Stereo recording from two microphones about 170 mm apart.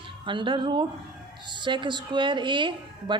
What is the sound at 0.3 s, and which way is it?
A woman's voice, 30° right (ahead or behind).